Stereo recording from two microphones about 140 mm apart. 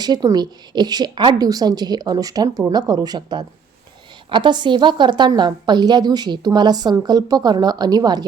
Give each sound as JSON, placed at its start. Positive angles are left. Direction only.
{"t": 0.0, "sound": "a woman's voice", "side_deg": -30}